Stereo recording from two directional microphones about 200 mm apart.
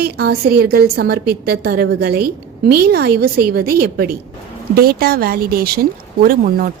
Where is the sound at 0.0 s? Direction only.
55° right (ahead or behind).